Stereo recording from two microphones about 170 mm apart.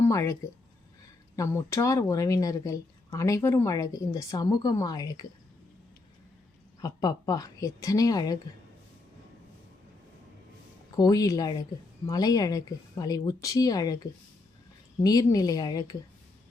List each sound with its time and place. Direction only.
0.0 s speech: 20° left (ahead or behind)
1.4 s speech: 15° left (ahead or behind)
6.8 s speech: 20° left (ahead or behind)
10.9 s speech: 20° left (ahead or behind)